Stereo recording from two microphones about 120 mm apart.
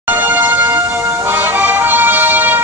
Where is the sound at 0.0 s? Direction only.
15° right (ahead or behind).